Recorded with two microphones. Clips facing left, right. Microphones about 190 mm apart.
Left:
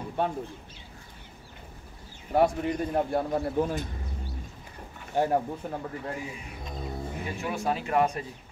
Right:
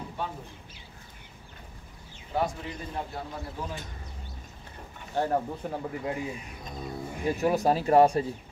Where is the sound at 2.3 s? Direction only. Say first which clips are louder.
Left 7 dB; 60° left (ahead or behind).